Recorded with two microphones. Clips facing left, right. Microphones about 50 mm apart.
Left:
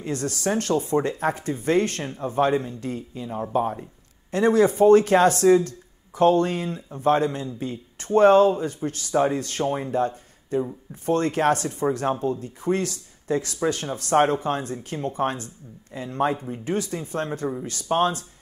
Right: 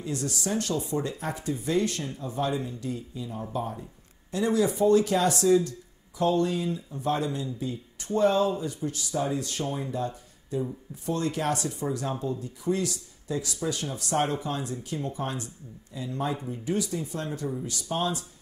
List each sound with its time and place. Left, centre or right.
0.0 s speech: left